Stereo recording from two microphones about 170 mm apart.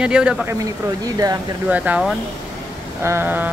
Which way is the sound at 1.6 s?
10° right (ahead or behind).